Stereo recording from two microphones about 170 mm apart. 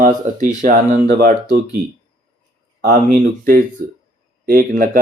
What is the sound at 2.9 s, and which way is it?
Speech, 45° right (ahead or behind).